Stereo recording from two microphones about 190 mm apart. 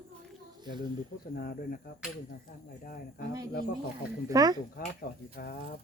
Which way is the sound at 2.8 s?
45° left (ahead or behind).